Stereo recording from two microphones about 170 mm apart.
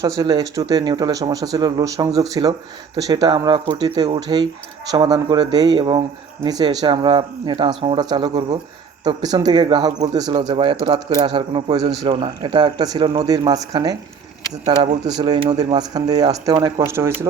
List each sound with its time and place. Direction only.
0.2 s speech: 20° right (ahead or behind)
15.0 s speech: 25° right (ahead or behind)